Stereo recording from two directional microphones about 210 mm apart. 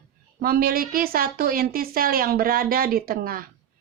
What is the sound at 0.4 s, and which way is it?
A woman's voice, 45° right (ahead or behind).